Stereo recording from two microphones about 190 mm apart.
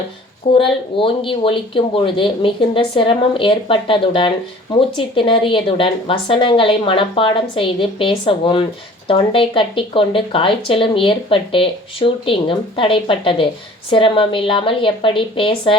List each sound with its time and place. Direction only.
0.5 s speech: 30° left (ahead or behind)